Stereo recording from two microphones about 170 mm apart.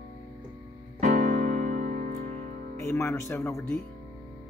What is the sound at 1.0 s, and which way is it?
Music, 45° right (ahead or behind).